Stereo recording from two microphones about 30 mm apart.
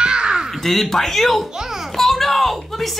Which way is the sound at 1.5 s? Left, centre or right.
Centre.